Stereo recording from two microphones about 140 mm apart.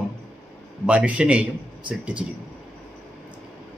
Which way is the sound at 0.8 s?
10° right (ahead or behind).